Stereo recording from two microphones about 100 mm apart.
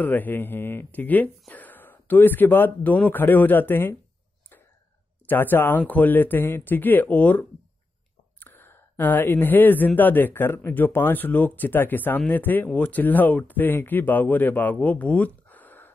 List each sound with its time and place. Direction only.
0.0 s speech: 20° left (ahead or behind)
5.3 s speech: 20° left (ahead or behind)